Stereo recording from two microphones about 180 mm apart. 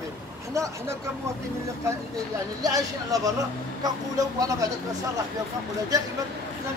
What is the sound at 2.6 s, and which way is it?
Speech, 20° right (ahead or behind).